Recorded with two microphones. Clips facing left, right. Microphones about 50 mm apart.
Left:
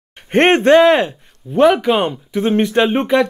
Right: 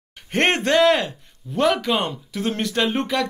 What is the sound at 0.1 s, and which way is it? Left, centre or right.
Speech, left.